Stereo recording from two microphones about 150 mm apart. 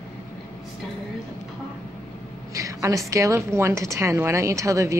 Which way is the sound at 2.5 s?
20° right (ahead or behind).